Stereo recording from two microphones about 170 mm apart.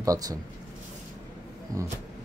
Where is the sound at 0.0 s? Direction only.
20° right (ahead or behind).